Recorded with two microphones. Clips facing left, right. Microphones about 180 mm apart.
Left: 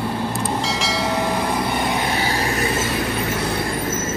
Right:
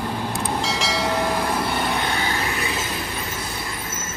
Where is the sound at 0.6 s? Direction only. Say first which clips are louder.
Left 1 dB; centre (ahead or behind).